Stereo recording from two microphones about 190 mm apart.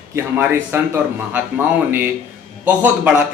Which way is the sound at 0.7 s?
10° right (ahead or behind).